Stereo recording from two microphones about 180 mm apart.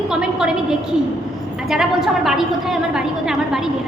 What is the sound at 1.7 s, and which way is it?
A woman's voice, centre (ahead or behind).